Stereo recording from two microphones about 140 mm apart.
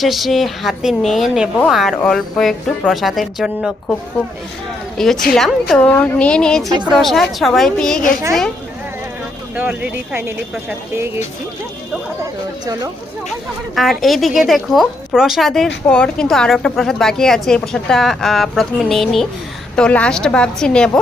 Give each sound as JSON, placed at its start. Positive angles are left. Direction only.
{"t": 0.0, "sound": "a woman's voice", "side_deg": 0}
{"t": 4.9, "sound": "a woman's voice", "side_deg": 5}
{"t": 6.7, "sound": "speech", "side_deg": -30}
{"t": 6.9, "sound": "a woman's voice", "side_deg": 0}
{"t": 9.6, "sound": "speech", "side_deg": -10}
{"t": 13.7, "sound": "a woman's voice", "side_deg": 0}